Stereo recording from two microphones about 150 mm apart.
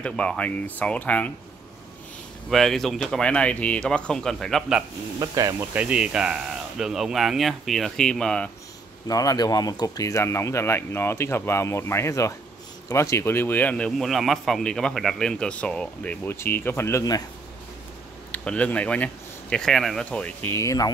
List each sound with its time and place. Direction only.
0.0 s a man's voice: 5° left (ahead or behind)
2.5 s speech: centre (ahead or behind)
5.2 s speech: 25° right (ahead or behind)
5.8 s speech: 5° right (ahead or behind)
9.0 s a man's voice: 25° left (ahead or behind)
18.3 s speech: 10° left (ahead or behind)
20.5 s speech: 20° left (ahead or behind)